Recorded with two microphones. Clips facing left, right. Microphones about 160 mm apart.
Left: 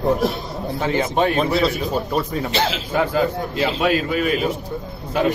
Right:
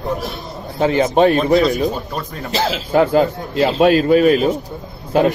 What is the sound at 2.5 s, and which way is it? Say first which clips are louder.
A man's voice: right 8 dB; 35° right (ahead or behind).